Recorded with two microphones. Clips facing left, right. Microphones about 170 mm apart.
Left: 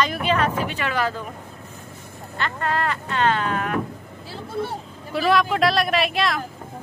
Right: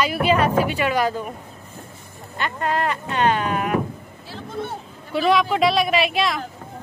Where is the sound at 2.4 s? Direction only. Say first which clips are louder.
Right 2 dB; 15° right (ahead or behind).